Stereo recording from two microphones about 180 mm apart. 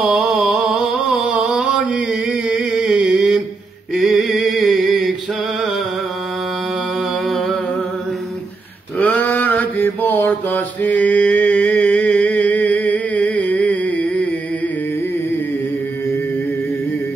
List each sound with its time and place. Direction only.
0.0 s a sound: 5° right (ahead or behind)
7.2 s music: centre (ahead or behind)
8.9 s mantra: 10° left (ahead or behind)